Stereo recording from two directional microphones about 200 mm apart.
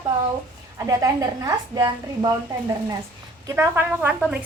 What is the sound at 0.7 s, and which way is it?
A woman's voice, 15° right (ahead or behind).